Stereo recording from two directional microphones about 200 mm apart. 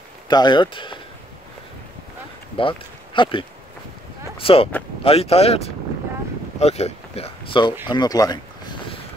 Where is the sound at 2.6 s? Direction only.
25° left (ahead or behind).